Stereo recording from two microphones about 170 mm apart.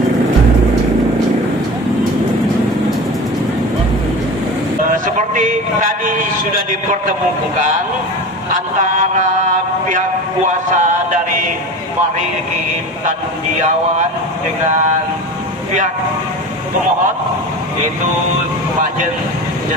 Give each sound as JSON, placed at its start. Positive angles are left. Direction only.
{"t": 4.9, "sound": "a sound", "side_deg": -50}
{"t": 8.4, "sound": "a man's voice", "side_deg": -50}
{"t": 10.7, "sound": "a man's voice", "side_deg": -45}